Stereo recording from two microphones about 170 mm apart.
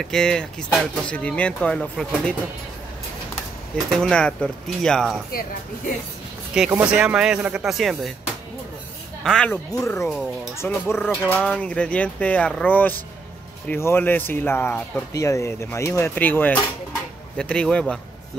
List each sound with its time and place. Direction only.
0.0 s speech: 5° left (ahead or behind)
4.0 s speech: 5° left (ahead or behind)
6.5 s speech: 5° right (ahead or behind)
9.2 s speech: 5° left (ahead or behind)
9.7 s speech: 20° left (ahead or behind)